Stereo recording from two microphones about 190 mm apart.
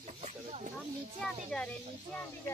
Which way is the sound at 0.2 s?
35° right (ahead or behind).